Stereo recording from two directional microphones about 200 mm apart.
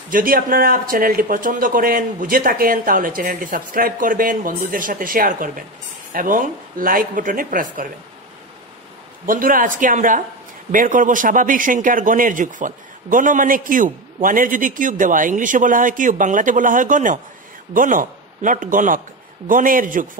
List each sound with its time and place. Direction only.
0.1 s speech: 45° right (ahead or behind)
9.2 s a man's voice: 45° right (ahead or behind)